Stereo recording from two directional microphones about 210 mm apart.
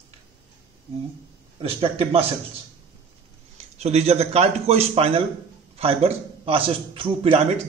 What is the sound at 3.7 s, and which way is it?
A man's voice, 30° right (ahead or behind).